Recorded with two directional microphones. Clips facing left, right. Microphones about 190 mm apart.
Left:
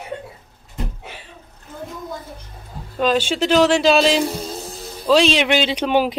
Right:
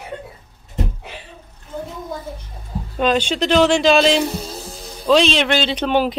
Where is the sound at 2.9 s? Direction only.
5° left (ahead or behind).